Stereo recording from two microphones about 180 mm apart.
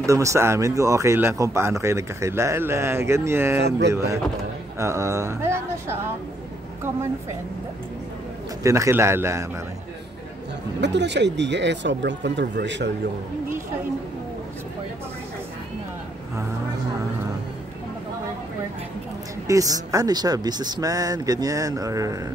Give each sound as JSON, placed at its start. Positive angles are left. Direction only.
{"t": 0.0, "sound": "speech", "side_deg": -15}
{"t": 8.6, "sound": "speech", "side_deg": -15}
{"t": 10.8, "sound": "speech", "side_deg": -75}
{"t": 19.4, "sound": "speech", "side_deg": -20}